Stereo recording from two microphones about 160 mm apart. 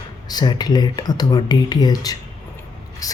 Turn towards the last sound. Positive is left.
turn(degrees=20)  # may be behind; listen again after turning